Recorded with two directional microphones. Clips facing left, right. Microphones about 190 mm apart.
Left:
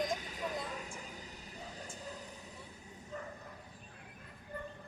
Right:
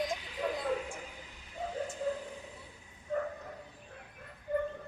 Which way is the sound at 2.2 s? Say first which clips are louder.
Right 7 dB; 40° left (ahead or behind).